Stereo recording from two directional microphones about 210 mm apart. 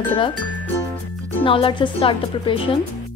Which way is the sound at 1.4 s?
25° left (ahead or behind).